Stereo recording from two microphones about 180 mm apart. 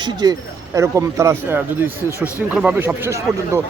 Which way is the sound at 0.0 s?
20° right (ahead or behind).